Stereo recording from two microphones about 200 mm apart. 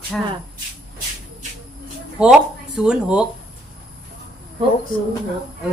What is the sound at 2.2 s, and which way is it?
A woman's voice, 5° right (ahead or behind).